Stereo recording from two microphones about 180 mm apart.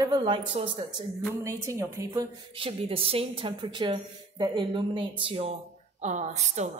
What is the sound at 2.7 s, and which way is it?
A woman's voice, 30° right (ahead or behind).